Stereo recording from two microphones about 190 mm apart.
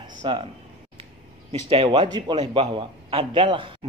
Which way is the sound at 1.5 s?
30° right (ahead or behind).